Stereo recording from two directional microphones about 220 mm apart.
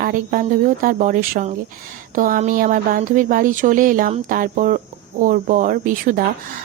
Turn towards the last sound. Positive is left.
turn(degrees=-40)  # may be behind; listen again after turning